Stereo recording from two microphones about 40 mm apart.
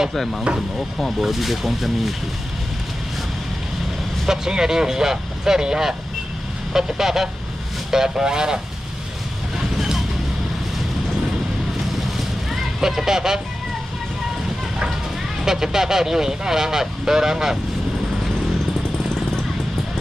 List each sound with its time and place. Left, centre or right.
0.1 s speech: centre
4.3 s speech: centre
9.8 s vehicle: centre
12.4 s vehicle: centre
15.4 s speech: centre